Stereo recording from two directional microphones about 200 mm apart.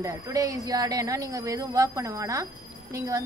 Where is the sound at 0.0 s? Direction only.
15° right (ahead or behind).